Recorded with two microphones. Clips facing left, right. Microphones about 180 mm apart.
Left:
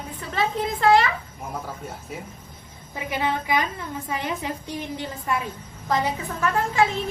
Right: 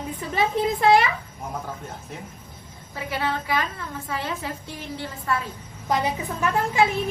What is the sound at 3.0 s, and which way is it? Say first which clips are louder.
A woman's voice: left 1 dB; 15° left (ahead or behind).